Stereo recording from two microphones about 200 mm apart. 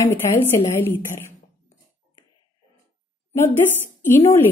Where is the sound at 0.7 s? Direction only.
15° left (ahead or behind).